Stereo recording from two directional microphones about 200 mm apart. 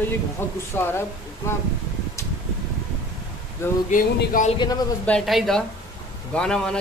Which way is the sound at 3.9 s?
45° left (ahead or behind).